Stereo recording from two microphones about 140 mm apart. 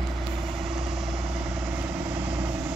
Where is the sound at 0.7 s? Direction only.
Centre (ahead or behind).